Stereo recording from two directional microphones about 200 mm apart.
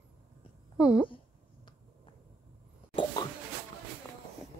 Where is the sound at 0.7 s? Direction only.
5° right (ahead or behind).